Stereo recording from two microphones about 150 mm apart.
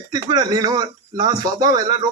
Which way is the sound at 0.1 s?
25° right (ahead or behind).